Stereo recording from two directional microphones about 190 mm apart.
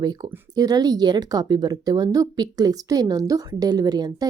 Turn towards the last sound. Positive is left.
turn(degrees=-20)  # may be behind; listen again after turning